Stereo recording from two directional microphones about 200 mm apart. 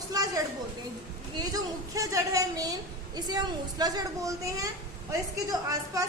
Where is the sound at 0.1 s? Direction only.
20° right (ahead or behind).